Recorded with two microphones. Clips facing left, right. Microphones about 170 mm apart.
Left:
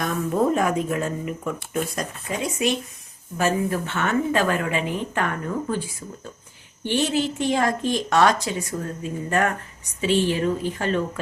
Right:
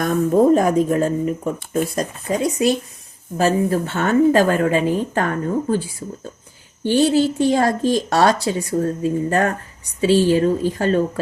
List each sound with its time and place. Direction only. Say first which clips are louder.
0.0 s speech: right 7 dB; 45° right (ahead or behind)